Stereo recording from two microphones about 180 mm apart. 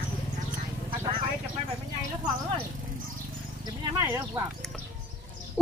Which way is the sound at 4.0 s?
15° right (ahead or behind).